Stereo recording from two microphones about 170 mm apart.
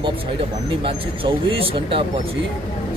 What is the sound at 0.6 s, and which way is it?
Speech, 30° right (ahead or behind).